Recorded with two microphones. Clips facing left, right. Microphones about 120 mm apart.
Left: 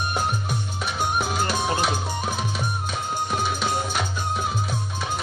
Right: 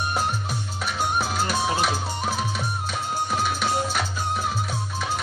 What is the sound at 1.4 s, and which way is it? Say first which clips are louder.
Music: right 1 dB; centre (ahead or behind).